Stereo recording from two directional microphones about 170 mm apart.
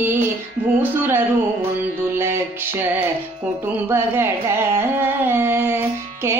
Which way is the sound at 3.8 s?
15° right (ahead or behind).